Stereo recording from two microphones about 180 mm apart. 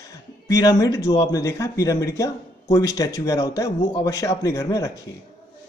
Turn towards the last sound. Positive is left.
turn(degrees=20)  # may be behind; listen again after turning